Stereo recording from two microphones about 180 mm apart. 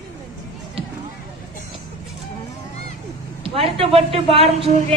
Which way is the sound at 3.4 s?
30° right (ahead or behind).